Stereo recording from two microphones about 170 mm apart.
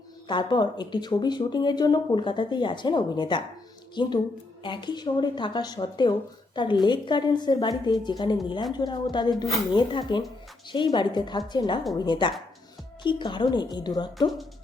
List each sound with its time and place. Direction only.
0.3 s speech: 25° left (ahead or behind)
14.2 s speech: centre (ahead or behind)